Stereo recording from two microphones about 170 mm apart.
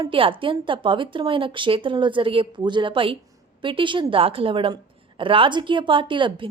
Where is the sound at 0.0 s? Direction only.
30° right (ahead or behind).